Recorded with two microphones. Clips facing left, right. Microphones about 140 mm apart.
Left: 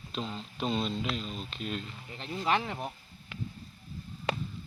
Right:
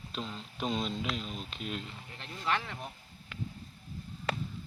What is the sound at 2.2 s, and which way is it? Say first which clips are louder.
Speech: left 4 dB; 20° left (ahead or behind).